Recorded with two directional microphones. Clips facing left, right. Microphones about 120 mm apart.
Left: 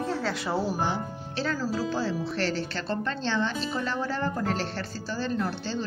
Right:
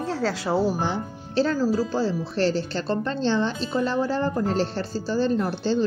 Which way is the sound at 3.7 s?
25° right (ahead or behind).